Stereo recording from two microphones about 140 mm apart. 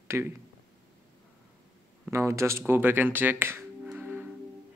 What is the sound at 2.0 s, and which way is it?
Speech, 20° right (ahead or behind).